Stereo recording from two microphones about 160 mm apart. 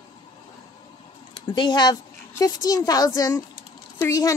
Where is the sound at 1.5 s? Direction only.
25° left (ahead or behind).